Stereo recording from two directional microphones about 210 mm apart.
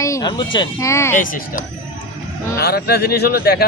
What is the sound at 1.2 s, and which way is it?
Speech, 40° left (ahead or behind).